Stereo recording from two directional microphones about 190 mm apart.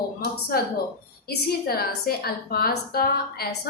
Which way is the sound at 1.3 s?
55° left (ahead or behind).